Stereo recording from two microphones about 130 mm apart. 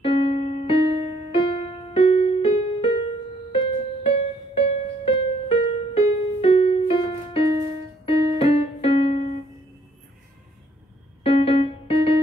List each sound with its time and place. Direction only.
0.0 s music: 45° left (ahead or behind)
8.0 s keyboard: 50° left (ahead or behind)
11.2 s music: 50° left (ahead or behind)